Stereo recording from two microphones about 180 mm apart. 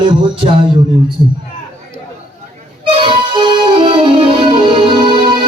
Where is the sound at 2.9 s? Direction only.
25° right (ahead or behind).